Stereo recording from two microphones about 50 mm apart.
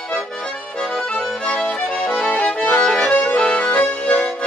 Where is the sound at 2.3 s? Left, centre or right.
Left.